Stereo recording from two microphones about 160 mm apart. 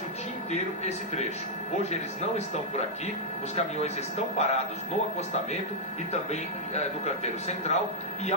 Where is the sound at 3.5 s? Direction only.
45° left (ahead or behind).